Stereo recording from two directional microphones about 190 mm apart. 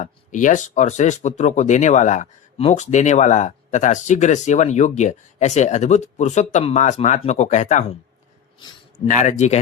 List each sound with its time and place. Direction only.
0.0 s speech: 40° left (ahead or behind)
9.0 s speech: 40° left (ahead or behind)